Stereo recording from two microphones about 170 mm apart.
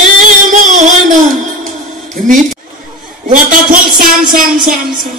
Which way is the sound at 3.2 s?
50° right (ahead or behind).